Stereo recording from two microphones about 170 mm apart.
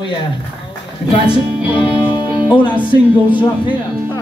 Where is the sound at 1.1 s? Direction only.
30° left (ahead or behind).